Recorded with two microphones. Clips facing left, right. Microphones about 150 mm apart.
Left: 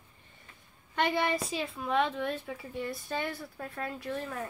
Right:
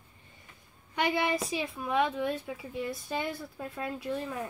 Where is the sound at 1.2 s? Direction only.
15° right (ahead or behind).